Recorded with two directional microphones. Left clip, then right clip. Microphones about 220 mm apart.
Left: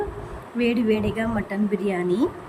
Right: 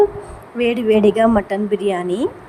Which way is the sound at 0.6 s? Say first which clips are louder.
Right 8 dB; 15° right (ahead or behind).